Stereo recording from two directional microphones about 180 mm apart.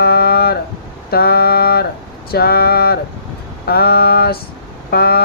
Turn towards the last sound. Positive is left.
turn(degrees=60)  # may be behind; listen again after turning